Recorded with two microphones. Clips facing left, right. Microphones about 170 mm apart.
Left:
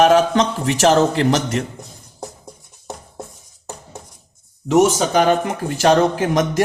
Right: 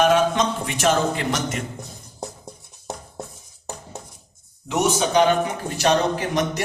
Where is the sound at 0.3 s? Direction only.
90° left.